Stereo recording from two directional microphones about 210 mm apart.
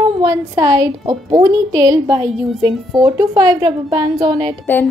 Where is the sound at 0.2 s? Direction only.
15° right (ahead or behind).